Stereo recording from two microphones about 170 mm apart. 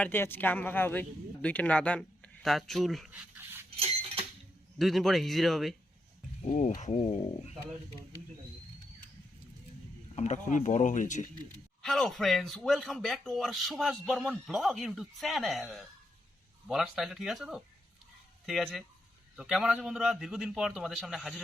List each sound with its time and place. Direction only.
0.0 s a man's voice: 10° left (ahead or behind); by 3.6 s 10° right (ahead or behind)
3.8 s chink: 35° right (ahead or behind)
4.8 s speech: centre (ahead or behind)
6.5 s speech: 45° left (ahead or behind)
7.0 s speech: 35° left (ahead or behind)
10.2 s speech: 45° left (ahead or behind)
11.8 s speech: centre (ahead or behind)